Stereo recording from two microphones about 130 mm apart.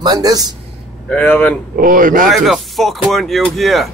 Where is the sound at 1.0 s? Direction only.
10° left (ahead or behind).